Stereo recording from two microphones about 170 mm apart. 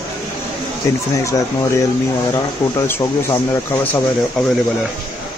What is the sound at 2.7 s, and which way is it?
Speech, 15° left (ahead or behind).